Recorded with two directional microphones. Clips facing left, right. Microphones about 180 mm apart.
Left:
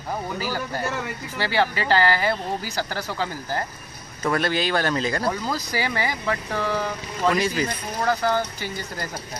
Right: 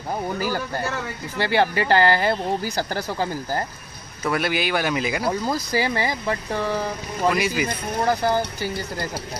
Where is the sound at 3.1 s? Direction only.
15° right (ahead or behind).